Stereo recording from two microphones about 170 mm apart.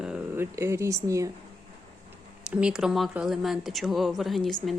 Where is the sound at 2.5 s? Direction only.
5° right (ahead or behind).